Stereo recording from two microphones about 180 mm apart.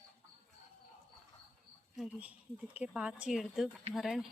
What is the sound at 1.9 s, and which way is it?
Speech, 5° right (ahead or behind).